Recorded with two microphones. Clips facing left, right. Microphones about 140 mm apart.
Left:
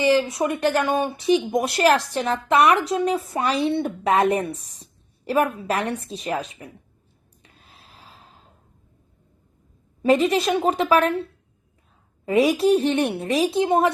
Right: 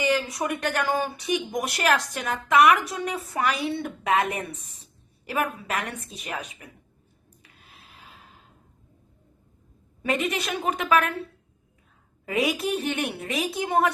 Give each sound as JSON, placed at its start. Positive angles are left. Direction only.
{"t": 0.0, "sound": "speech", "side_deg": 25}
{"t": 7.9, "sound": "a sound", "side_deg": 35}
{"t": 10.0, "sound": "a woman's voice", "side_deg": 30}
{"t": 12.5, "sound": "speech", "side_deg": 30}